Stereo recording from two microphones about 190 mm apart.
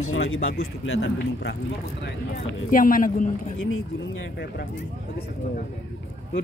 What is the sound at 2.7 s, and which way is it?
Speech, 45° left (ahead or behind).